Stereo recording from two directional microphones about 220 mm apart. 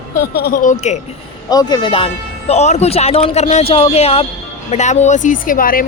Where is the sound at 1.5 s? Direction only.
20° left (ahead or behind); by 5.8 s 40° left (ahead or behind).